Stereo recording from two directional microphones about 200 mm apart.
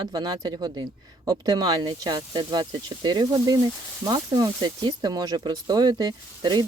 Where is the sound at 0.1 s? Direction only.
20° right (ahead or behind).